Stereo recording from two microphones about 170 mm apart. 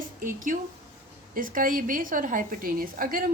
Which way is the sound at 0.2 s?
50° right (ahead or behind).